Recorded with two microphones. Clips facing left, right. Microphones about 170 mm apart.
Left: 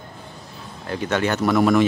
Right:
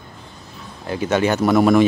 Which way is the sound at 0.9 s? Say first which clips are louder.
Right 4 dB; 10° right (ahead or behind).